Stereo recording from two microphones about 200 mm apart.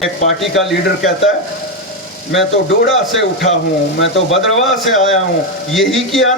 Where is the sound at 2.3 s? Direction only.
65° left (ahead or behind).